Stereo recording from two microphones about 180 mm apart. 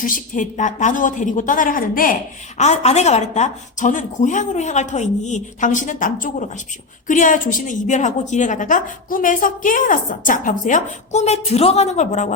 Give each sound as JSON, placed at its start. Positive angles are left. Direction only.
{"t": 0.0, "sound": "a woman's voice", "side_deg": 45}
{"t": 2.6, "sound": "a woman's voice", "side_deg": 40}